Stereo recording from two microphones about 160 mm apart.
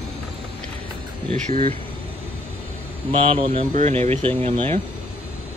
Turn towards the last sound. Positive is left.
turn(degrees=-35)  # may be behind; listen again after turning